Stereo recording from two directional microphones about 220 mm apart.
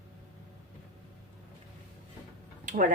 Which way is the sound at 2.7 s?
35° right (ahead or behind).